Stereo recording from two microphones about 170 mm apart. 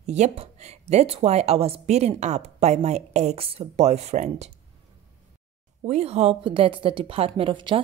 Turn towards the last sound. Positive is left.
turn(degrees=-30)  # may be behind; listen again after turning